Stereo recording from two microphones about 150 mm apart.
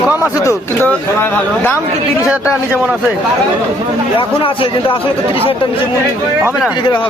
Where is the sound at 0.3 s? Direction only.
20° left (ahead or behind).